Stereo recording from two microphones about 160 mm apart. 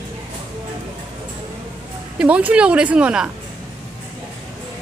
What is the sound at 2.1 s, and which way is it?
Speech, 10° right (ahead or behind).